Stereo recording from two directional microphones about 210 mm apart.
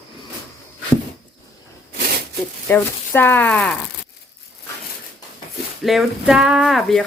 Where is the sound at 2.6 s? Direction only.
10° left (ahead or behind).